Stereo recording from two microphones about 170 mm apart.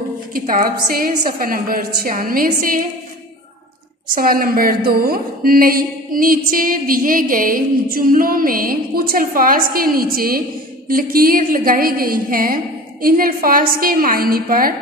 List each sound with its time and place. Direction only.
0.3 s a woman's voice: 55° right (ahead or behind)
4.1 s a woman's voice: 55° right (ahead or behind)